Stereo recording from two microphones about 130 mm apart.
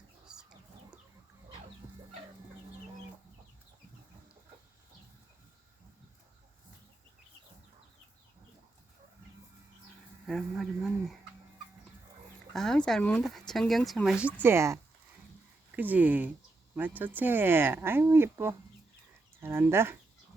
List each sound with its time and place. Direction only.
0.3 s chicken: 5° right (ahead or behind)
10.2 s speech: centre (ahead or behind)
12.5 s speech: 5° left (ahead or behind)
14.4 s speech: 20° right (ahead or behind)